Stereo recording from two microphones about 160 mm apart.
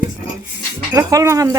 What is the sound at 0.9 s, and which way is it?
Speech, 20° right (ahead or behind).